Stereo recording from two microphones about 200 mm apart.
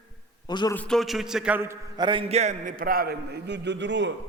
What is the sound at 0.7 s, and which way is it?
A man's voice, 5° left (ahead or behind).